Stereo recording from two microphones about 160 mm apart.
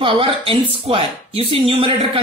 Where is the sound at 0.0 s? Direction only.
35° right (ahead or behind).